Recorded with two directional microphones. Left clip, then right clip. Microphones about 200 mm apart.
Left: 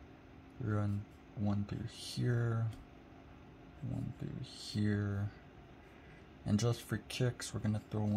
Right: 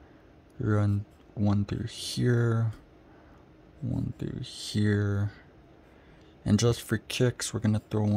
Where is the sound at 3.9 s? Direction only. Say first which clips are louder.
Right 10 dB; 50° right (ahead or behind).